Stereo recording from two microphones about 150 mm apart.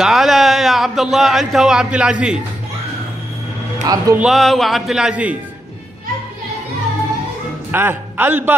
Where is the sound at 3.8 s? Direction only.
25° right (ahead or behind).